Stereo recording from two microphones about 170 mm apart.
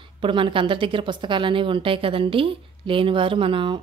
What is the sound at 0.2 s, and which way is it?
A woman's voice, 30° right (ahead or behind).